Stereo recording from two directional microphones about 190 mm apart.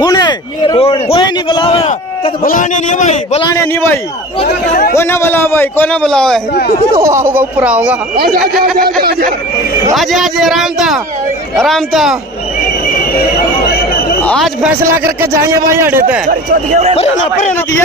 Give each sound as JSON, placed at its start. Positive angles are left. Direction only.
{"t": 0.0, "sound": "a sound", "side_deg": 20}
{"t": 2.4, "sound": "a man's voice", "side_deg": 40}
{"t": 3.5, "sound": "a man's voice", "side_deg": 15}
{"t": 7.0, "sound": "speech", "side_deg": -15}
{"t": 9.9, "sound": "speech", "side_deg": 0}
{"t": 14.2, "sound": "speech", "side_deg": 0}
{"t": 15.3, "sound": "speech", "side_deg": -15}
{"t": 16.3, "sound": "speech", "side_deg": -40}
{"t": 16.9, "sound": "a man's voice", "side_deg": 35}